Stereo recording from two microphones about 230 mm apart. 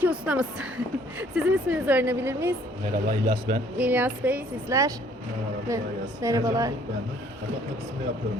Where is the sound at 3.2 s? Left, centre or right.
Right.